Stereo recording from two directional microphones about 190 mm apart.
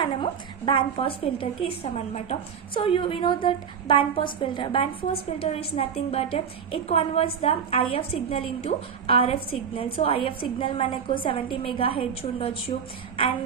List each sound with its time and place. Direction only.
0.2 s a woman's voice: 25° left (ahead or behind)